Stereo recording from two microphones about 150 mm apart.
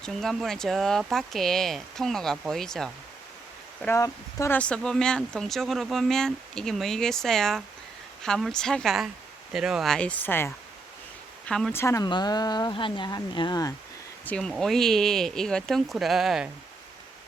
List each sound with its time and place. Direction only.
0.0 s speech: centre (ahead or behind)
3.8 s speech: 20° left (ahead or behind)
4.5 s speech: 5° left (ahead or behind)
11.4 s speech: 5° left (ahead or behind)
11.7 s speech: 20° left (ahead or behind)
12.0 s speech: 30° left (ahead or behind)
14.3 s speech: 5° left (ahead or behind)